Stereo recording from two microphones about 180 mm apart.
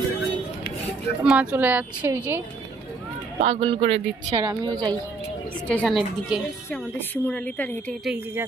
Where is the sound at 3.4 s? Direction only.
35° right (ahead or behind).